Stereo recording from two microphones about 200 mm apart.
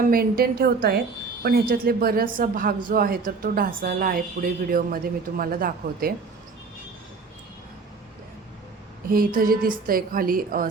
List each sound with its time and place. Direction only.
0.1 s a woman's voice: 50° right (ahead or behind)
9.0 s a woman's voice: 45° right (ahead or behind)